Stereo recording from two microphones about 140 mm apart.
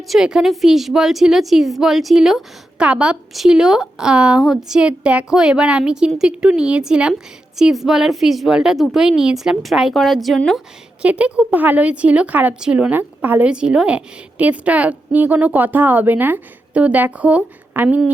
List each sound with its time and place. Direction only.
0.1 s a woman's voice: 5° right (ahead or behind)
11.0 s speech: 10° right (ahead or behind)